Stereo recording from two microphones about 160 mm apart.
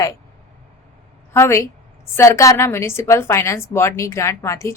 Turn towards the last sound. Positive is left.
turn(degrees=20)  # may be behind; listen again after turning